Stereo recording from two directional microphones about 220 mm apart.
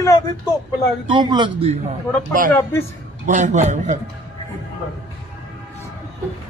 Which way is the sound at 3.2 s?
35° right (ahead or behind).